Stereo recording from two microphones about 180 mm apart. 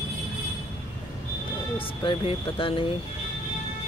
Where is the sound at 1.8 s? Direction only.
30° left (ahead or behind).